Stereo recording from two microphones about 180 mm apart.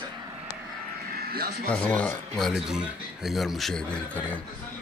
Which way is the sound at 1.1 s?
55° right (ahead or behind).